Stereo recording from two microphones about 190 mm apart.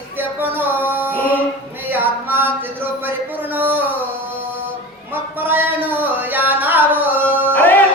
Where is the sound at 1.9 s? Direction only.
10° right (ahead or behind).